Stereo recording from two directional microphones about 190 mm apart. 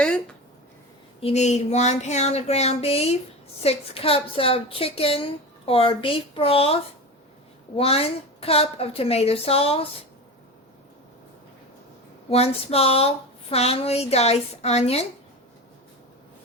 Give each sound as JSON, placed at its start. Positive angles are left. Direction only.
{"t": 0.0, "sound": "a sound", "side_deg": 5}
{"t": 1.2, "sound": "a woman's voice", "side_deg": 35}
{"t": 7.8, "sound": "speech", "side_deg": 30}
{"t": 12.3, "sound": "speech", "side_deg": 30}